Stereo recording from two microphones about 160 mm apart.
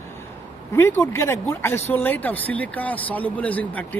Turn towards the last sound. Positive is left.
turn(degrees=10)  # may be behind; listen again after turning